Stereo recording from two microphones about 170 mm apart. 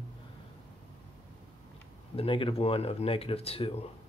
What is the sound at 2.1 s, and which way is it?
Speech, 30° left (ahead or behind).